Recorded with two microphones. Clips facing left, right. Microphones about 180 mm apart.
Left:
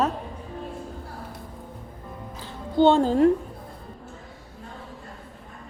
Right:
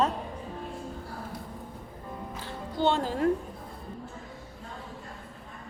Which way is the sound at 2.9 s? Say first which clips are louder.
Left 9 dB; 25° left (ahead or behind).